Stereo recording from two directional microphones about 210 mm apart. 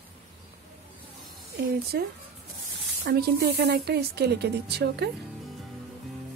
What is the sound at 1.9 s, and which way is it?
Speech, 50° right (ahead or behind).